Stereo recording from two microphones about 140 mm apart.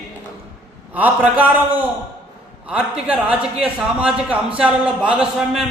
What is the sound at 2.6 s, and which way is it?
A man's voice, 10° right (ahead or behind).